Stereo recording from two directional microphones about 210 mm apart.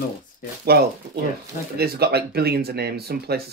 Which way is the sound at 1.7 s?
50° right (ahead or behind).